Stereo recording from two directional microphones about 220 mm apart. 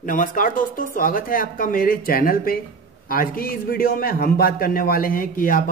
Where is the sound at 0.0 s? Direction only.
35° left (ahead or behind).